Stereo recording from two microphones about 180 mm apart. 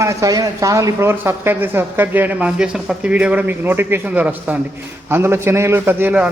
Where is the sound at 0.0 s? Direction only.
15° right (ahead or behind).